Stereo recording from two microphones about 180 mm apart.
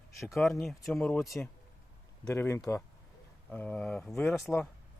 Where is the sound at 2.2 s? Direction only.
15° left (ahead or behind).